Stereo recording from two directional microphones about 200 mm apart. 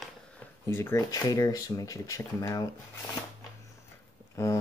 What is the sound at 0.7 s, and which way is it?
Speech, 10° left (ahead or behind).